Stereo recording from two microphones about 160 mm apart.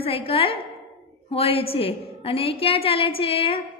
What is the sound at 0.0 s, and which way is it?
A woman's voice, 35° left (ahead or behind).